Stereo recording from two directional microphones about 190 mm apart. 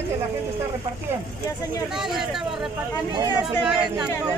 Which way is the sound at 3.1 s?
20° right (ahead or behind).